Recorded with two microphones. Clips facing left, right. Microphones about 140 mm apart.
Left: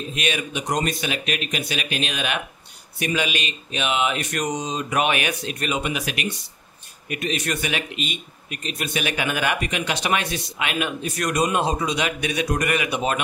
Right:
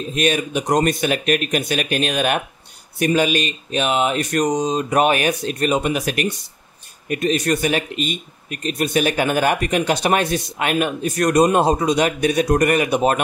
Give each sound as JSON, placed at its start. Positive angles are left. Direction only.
{"t": 0.1, "sound": "speech", "side_deg": -40}